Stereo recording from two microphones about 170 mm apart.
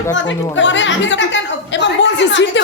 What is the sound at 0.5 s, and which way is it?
A woman's voice, 90° left.